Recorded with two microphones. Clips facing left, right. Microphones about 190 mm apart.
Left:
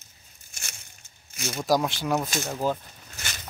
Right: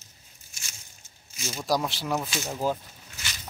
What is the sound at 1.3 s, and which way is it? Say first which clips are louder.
Speech: left 3 dB; 60° left (ahead or behind).